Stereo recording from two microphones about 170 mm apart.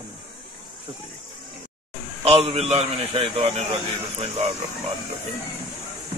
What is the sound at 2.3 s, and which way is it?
A man's voice, 35° right (ahead or behind).